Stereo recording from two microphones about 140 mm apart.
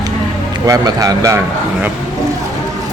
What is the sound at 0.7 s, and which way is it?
Speech, 25° right (ahead or behind).